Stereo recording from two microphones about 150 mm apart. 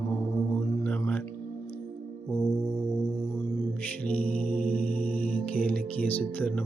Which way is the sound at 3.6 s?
10° left (ahead or behind).